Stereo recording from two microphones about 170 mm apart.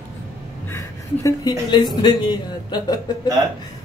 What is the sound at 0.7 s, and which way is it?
Speech, 15° left (ahead or behind).